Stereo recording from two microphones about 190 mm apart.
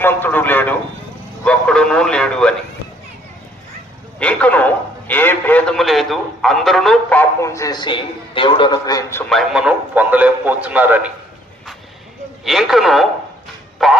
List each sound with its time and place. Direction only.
0.0 s a man's voice: 10° left (ahead or behind)
4.2 s a man's voice: 5° left (ahead or behind)
9.3 s a man's voice: centre (ahead or behind)
12.5 s speech: centre (ahead or behind)
13.7 s a sound: centre (ahead or behind)